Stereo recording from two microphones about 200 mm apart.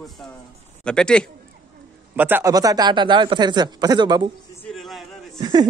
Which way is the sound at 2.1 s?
10° right (ahead or behind).